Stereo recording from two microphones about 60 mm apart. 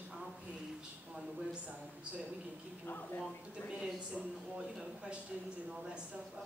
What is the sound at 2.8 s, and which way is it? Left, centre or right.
Speech, left.